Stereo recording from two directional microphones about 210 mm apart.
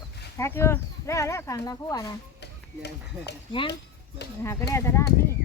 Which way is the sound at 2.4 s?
50° left (ahead or behind).